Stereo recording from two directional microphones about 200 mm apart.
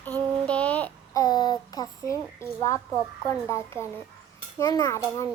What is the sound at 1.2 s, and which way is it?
A child's voice, 20° left (ahead or behind).